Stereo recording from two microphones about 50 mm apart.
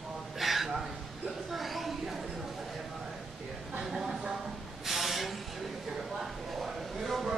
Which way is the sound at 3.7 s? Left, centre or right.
Centre.